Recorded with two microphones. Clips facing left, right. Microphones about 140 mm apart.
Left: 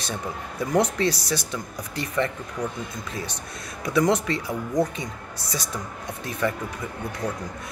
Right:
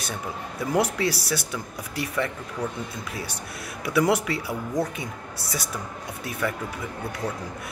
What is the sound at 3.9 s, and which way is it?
Speech, 5° right (ahead or behind).